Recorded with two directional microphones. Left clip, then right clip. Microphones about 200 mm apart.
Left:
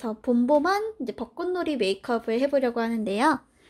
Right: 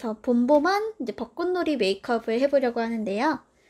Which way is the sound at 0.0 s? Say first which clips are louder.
Right 1 dB; 5° right (ahead or behind).